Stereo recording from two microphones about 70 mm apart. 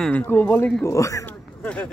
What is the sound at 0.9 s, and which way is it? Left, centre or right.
Speech, left.